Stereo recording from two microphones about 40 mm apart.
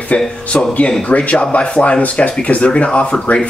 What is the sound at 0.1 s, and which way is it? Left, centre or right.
Speech, left.